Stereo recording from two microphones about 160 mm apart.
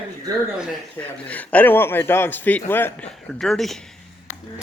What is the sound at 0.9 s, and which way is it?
A man's voice, 10° left (ahead or behind).